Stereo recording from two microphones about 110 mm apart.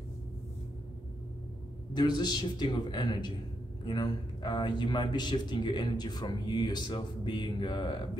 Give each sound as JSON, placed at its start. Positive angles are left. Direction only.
{"t": 2.0, "sound": "a man's voice", "side_deg": 40}